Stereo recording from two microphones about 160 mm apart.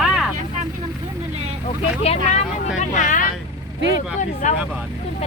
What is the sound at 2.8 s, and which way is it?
Speech, 55° left (ahead or behind).